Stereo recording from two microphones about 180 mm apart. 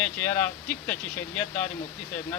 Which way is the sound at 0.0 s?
10° left (ahead or behind).